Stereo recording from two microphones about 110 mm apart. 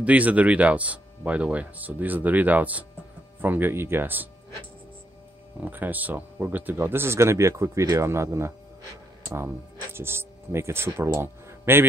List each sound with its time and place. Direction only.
0.0 s speech: 15° right (ahead or behind)
5.6 s speech: 15° right (ahead or behind)
9.9 s speech: 20° right (ahead or behind)